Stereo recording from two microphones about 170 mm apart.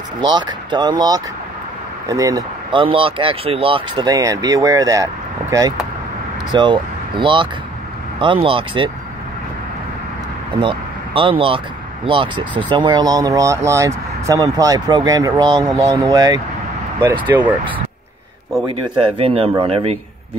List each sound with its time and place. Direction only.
0.2 s speech: 25° right (ahead or behind)
10.6 s speech: 30° right (ahead or behind)
18.7 s speech: 30° right (ahead or behind)